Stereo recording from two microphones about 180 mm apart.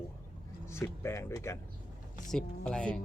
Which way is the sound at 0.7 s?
15° left (ahead or behind).